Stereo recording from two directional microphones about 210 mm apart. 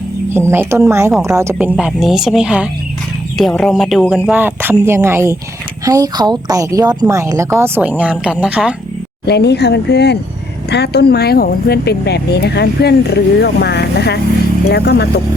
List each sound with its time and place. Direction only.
0.3 s a woman's voice: 10° right (ahead or behind)
9.2 s speech: 50° left (ahead or behind)